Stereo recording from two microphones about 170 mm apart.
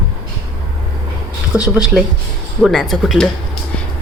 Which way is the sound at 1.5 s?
5° right (ahead or behind).